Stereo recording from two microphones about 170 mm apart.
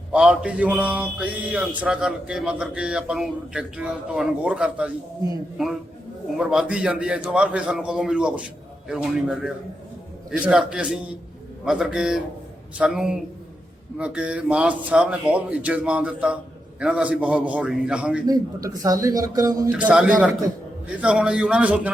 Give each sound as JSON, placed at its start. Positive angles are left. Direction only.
{"t": 0.1, "sound": "mantra", "side_deg": -5}
{"t": 6.3, "sound": "mantra", "side_deg": 0}
{"t": 10.4, "sound": "speech", "side_deg": -5}
{"t": 11.6, "sound": "mantra", "side_deg": -5}
{"t": 14.0, "sound": "speech", "side_deg": -5}
{"t": 18.3, "sound": "a man's voice", "side_deg": -20}
{"t": 19.7, "sound": "mantra", "side_deg": -5}
{"t": 20.8, "sound": "speech", "side_deg": -5}